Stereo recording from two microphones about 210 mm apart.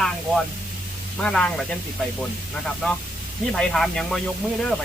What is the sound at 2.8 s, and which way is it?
Speech, centre (ahead or behind).